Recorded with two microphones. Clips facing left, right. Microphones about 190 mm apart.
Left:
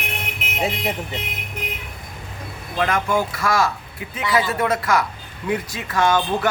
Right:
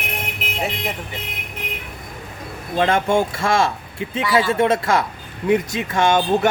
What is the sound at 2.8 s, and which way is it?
Speech, 30° right (ahead or behind).